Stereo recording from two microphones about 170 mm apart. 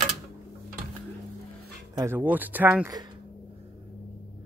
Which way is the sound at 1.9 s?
15° right (ahead or behind).